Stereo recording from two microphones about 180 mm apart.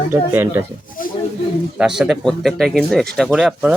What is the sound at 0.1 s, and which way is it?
Speech, 10° right (ahead or behind).